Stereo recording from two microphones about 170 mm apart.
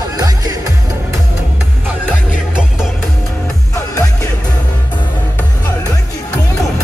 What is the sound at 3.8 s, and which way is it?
Music, 15° left (ahead or behind).